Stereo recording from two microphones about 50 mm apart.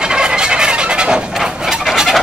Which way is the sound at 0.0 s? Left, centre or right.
Centre.